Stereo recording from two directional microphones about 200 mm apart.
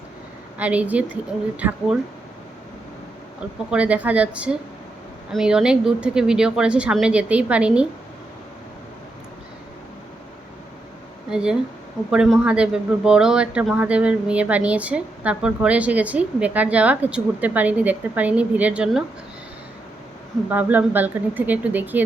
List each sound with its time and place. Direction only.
0.6 s speech: 5° right (ahead or behind)
3.7 s speech: 5° right (ahead or behind)
11.3 s speech: 5° right (ahead or behind)
20.5 s speech: 10° right (ahead or behind)